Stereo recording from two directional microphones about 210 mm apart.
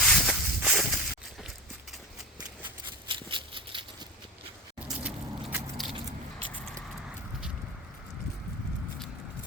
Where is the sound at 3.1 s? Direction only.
25° right (ahead or behind).